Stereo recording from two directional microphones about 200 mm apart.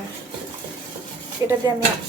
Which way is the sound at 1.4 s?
15° right (ahead or behind).